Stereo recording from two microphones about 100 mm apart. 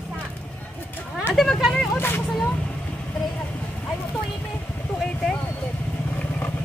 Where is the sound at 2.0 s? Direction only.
20° left (ahead or behind).